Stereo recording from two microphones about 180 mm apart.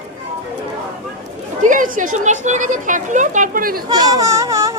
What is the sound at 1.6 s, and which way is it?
Speech, 45° right (ahead or behind).